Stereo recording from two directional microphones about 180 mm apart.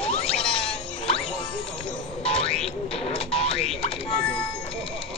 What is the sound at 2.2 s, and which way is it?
Boing, 35° left (ahead or behind).